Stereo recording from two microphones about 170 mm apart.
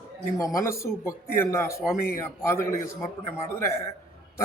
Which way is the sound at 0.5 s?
15° left (ahead or behind).